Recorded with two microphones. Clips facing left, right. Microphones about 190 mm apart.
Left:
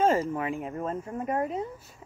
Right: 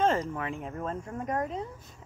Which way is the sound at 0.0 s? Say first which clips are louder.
Left 3 dB; 10° left (ahead or behind).